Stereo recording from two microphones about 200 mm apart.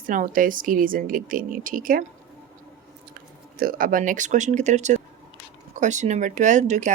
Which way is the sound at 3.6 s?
45° right (ahead or behind).